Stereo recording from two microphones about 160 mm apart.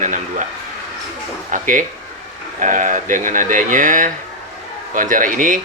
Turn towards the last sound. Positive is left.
turn(degrees=-55)  # may be behind; listen again after turning